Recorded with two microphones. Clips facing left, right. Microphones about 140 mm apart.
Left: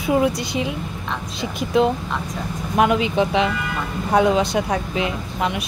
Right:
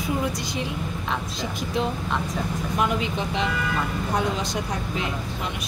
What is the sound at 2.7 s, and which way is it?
Speech, 90° left.